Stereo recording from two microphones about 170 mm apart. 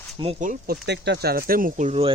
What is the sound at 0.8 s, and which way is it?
Speech, 90° right.